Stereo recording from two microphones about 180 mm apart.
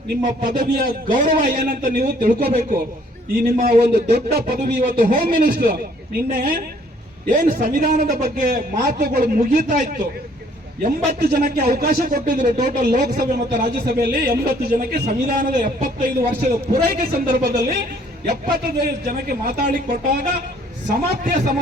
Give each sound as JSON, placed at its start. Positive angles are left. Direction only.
{"t": 0.2, "sound": "a man's voice", "side_deg": -50}
{"t": 19.0, "sound": "a woman's voice", "side_deg": -55}